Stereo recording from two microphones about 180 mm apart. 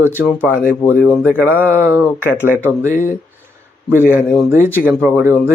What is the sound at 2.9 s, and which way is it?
Speech, 45° left (ahead or behind).